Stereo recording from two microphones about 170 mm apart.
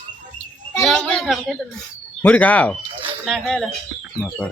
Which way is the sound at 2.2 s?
10° left (ahead or behind).